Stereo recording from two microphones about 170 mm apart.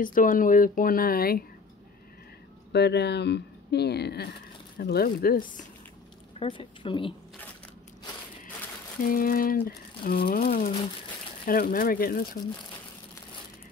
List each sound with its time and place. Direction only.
0.0 s speech: 50° left (ahead or behind)
2.7 s speech: 80° left; by 5.7 s 55° left (ahead or behind)
6.4 s a woman's voice: 30° left (ahead or behind)
9.0 s speech: 55° left (ahead or behind)